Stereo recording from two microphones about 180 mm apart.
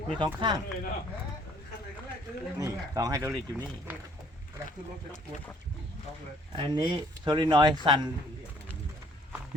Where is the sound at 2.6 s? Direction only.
20° right (ahead or behind).